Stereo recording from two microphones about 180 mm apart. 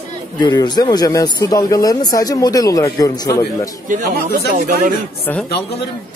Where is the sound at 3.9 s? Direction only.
45° right (ahead or behind).